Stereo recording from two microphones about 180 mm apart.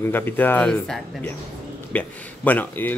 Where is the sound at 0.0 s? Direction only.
10° left (ahead or behind).